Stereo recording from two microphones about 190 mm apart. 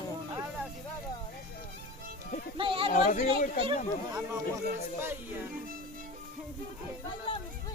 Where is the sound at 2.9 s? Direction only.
45° left (ahead or behind).